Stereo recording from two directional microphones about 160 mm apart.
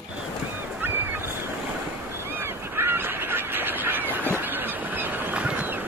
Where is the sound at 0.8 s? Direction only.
15° right (ahead or behind).